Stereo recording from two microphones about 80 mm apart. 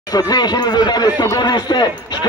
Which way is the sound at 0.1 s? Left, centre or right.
Left.